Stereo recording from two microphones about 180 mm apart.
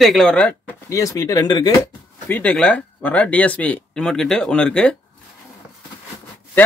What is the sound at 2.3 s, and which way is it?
Speech, 5° left (ahead or behind).